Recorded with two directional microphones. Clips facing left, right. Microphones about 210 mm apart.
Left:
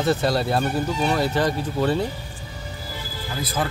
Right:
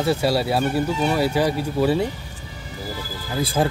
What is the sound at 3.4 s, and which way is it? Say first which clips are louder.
Speech: right 5 dB; 30° right (ahead or behind).